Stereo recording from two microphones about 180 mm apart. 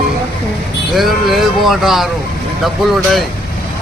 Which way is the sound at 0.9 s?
Centre (ahead or behind).